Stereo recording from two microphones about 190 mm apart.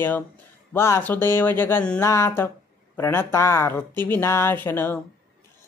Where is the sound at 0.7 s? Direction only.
15° left (ahead or behind).